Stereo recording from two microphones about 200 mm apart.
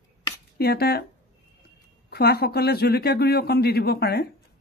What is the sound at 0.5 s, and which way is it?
Speech, 50° left (ahead or behind).